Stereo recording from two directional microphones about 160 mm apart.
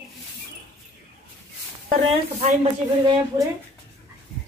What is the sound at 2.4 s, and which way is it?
Speech, 40° right (ahead or behind).